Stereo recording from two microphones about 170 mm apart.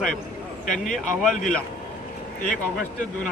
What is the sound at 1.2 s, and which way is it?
Speech, 5° left (ahead or behind).